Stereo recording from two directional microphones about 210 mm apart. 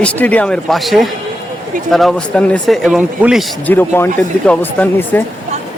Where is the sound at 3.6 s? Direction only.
10° left (ahead or behind).